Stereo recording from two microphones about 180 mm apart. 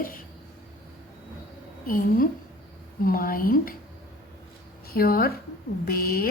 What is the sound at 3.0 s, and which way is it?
Speech, 55° left (ahead or behind).